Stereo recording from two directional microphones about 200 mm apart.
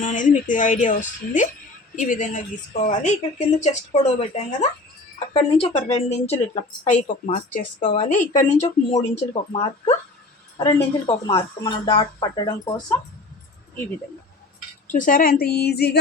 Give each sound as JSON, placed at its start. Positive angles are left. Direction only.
{"t": 0.0, "sound": "a woman's voice", "side_deg": 40}
{"t": 11.0, "sound": "speech", "side_deg": 20}
{"t": 14.9, "sound": "speech", "side_deg": 40}